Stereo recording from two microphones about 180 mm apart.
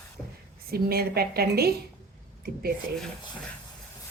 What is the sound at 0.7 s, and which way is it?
A woman's voice, 60° right (ahead or behind).